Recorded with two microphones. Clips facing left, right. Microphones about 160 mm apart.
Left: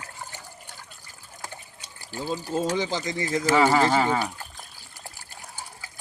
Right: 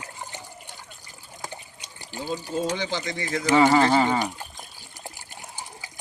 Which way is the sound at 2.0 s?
40° left (ahead or behind).